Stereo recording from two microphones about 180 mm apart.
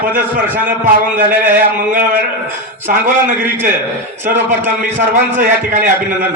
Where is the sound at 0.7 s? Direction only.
50° right (ahead or behind).